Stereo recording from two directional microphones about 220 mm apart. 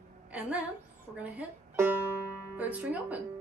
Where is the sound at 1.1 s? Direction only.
5° right (ahead or behind).